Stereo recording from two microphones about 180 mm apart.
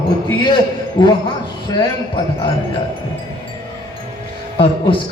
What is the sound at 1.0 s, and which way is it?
Speech, 30° left (ahead or behind).